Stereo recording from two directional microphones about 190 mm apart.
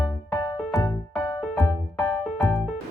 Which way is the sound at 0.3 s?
20° left (ahead or behind).